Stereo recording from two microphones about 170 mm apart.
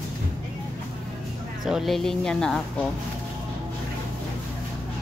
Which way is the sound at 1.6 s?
Centre (ahead or behind).